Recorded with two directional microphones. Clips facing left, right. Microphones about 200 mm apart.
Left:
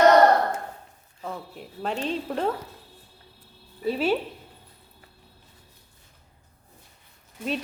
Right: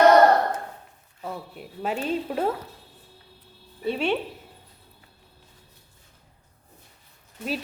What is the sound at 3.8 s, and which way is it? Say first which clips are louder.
Speech: left 1 dB; 5° left (ahead or behind).